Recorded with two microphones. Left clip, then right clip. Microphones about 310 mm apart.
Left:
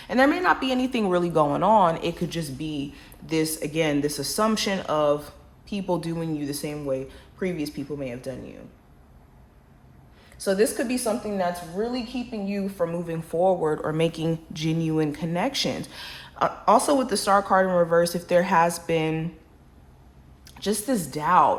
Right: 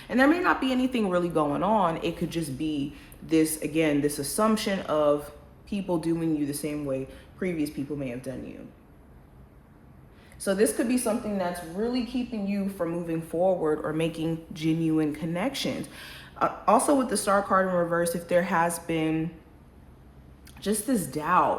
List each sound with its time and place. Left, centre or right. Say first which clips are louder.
0.1 s a woman's voice: left 2 dB; left
10.3 s a woman's voice: left 2 dB; left
20.6 s a woman's voice: left 2 dB; left